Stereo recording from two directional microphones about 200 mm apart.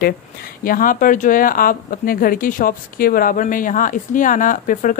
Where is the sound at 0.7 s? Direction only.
45° left (ahead or behind).